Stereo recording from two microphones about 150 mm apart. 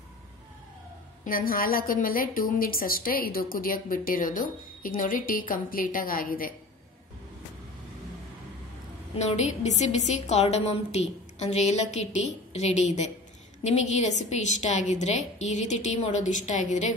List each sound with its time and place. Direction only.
1.2 s a woman's voice: 75° left (ahead or behind)
9.1 s a woman's voice: 50° left (ahead or behind)